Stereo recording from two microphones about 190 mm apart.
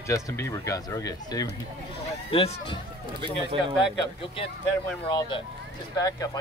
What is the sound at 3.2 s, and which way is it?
Speech, 25° right (ahead or behind).